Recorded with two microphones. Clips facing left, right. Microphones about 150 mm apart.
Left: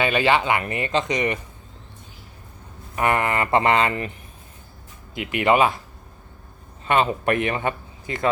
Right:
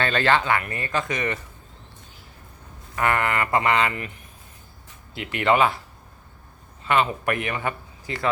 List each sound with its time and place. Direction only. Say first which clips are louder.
0.0 s a man's voice: left 2 dB; 15° left (ahead or behind)
2.9 s a man's voice: left 2 dB; 20° left (ahead or behind)
5.1 s a man's voice: left 2 dB; 15° left (ahead or behind)
6.8 s a man's voice: left 2 dB; 25° left (ahead or behind)